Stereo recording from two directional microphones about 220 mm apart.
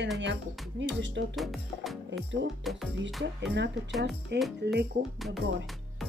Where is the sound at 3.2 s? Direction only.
50° right (ahead or behind).